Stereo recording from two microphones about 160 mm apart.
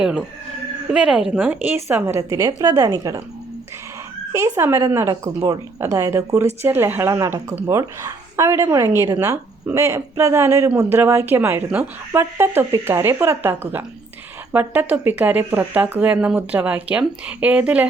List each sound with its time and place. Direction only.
0.0 s a woman's voice: 5° right (ahead or behind); by 3.2 s 25° right (ahead or behind)
4.3 s a woman's voice: 20° right (ahead or behind)